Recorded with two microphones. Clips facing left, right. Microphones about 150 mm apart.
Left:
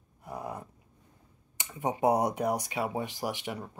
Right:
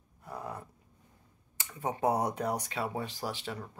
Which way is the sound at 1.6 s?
15° left (ahead or behind).